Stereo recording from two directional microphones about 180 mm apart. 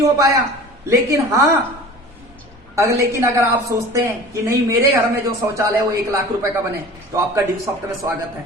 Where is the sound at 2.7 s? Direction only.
15° right (ahead or behind).